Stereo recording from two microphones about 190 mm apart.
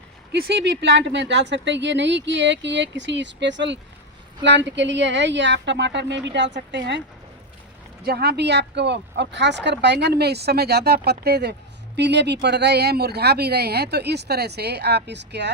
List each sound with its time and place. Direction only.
0.6 s speech: 65° right (ahead or behind)
8.0 s speech: 55° right (ahead or behind)